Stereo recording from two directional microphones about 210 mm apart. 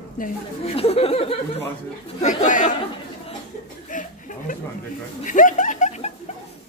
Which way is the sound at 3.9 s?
40° left (ahead or behind).